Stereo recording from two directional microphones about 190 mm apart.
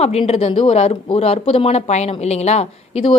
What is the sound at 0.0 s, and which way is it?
Speech, 35° left (ahead or behind).